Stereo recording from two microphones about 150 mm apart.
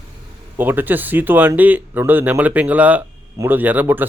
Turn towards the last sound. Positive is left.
turn(degrees=-15)  # may be behind; listen again after turning